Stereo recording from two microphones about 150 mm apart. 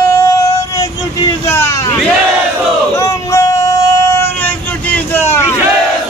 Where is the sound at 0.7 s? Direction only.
20° left (ahead or behind).